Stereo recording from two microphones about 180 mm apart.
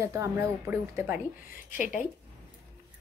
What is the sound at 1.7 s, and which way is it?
Speech, 45° left (ahead or behind).